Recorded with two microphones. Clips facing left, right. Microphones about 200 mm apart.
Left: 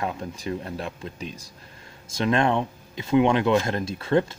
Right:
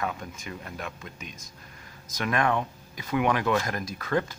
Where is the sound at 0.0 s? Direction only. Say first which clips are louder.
Left 4 dB; 30° left (ahead or behind).